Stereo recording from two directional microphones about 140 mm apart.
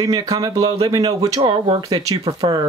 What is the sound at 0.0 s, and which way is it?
Speech, 25° right (ahead or behind).